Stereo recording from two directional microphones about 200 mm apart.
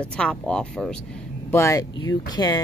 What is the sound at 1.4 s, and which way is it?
Speech, 15° left (ahead or behind).